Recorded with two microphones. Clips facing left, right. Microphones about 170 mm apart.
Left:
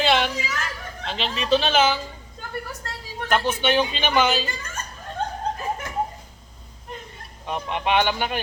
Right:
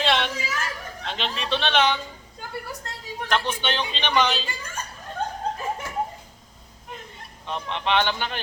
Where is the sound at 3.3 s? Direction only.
10° left (ahead or behind).